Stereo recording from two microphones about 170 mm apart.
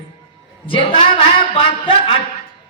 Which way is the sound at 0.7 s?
30° left (ahead or behind).